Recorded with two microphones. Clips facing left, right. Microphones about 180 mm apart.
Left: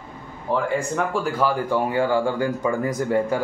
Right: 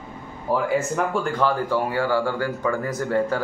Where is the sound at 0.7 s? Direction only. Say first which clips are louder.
Right 1 dB; centre (ahead or behind).